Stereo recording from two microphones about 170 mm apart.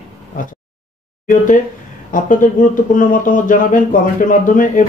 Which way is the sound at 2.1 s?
50° left (ahead or behind).